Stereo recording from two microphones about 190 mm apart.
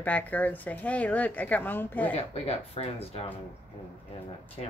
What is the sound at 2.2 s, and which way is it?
Speech, 35° left (ahead or behind).